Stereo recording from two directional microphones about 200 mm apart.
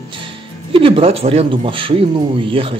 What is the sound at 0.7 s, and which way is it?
Speech, 25° right (ahead or behind).